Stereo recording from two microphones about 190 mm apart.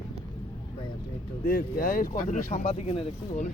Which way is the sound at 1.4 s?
50° left (ahead or behind).